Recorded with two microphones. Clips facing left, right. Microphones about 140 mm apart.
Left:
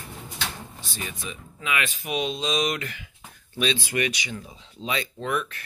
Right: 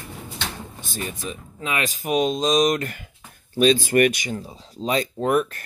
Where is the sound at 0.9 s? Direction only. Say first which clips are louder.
Right 5 dB; 40° right (ahead or behind).